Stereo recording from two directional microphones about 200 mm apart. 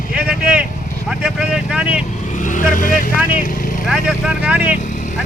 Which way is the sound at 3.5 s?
45° left (ahead or behind).